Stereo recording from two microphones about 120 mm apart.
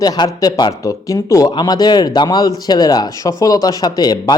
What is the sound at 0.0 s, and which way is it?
Speech, 30° left (ahead or behind).